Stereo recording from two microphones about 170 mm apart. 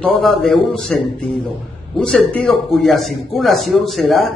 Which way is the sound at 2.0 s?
5° left (ahead or behind).